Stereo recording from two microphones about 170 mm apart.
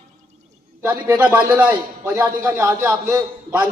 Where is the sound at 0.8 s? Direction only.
15° right (ahead or behind).